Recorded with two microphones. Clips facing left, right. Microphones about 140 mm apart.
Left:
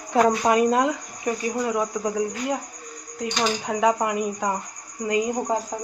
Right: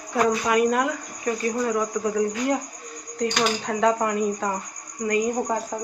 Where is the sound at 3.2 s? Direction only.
10° left (ahead or behind).